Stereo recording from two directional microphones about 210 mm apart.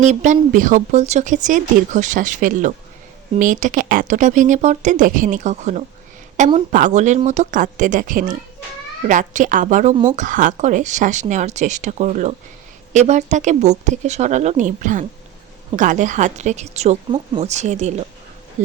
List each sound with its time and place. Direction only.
0.0 s speech: 35° right (ahead or behind)